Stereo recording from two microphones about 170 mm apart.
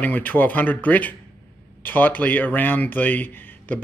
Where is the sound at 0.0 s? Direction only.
10° left (ahead or behind).